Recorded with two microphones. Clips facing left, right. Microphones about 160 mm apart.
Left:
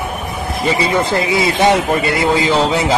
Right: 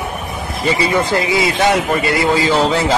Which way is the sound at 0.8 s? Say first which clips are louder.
Right 1 dB; 25° left (ahead or behind).